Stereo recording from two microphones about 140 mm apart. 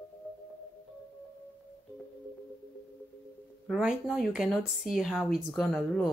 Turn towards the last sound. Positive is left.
turn(degrees=0)  # may be behind; listen again after turning